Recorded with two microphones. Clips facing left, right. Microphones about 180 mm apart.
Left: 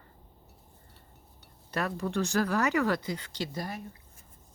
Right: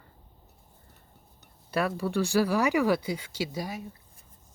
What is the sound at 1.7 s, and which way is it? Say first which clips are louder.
Speech: right 3 dB; 5° right (ahead or behind).